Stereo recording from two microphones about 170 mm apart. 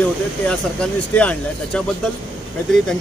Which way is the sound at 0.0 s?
5° left (ahead or behind).